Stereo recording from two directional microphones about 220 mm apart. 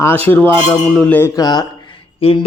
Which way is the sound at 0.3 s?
10° left (ahead or behind).